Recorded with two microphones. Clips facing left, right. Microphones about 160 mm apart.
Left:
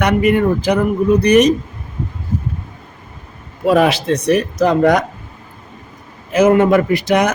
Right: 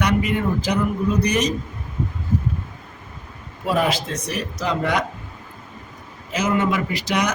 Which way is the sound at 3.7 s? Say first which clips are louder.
Left 8 dB; 75° left (ahead or behind).